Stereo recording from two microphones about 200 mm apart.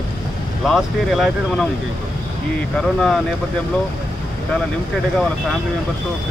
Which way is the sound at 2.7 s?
Centre (ahead or behind).